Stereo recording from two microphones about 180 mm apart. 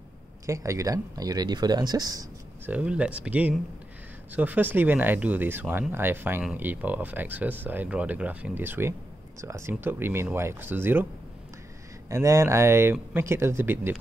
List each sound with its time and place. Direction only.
0.5 s speech: 15° right (ahead or behind)
2.7 s speech: 5° right (ahead or behind)
12.1 s speech: 15° right (ahead or behind)